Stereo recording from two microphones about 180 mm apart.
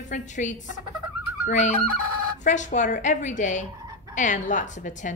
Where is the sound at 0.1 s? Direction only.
45° left (ahead or behind).